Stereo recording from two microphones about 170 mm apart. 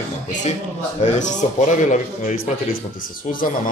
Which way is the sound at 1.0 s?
45° left (ahead or behind).